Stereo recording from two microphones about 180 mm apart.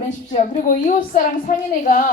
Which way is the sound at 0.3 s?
45° left (ahead or behind).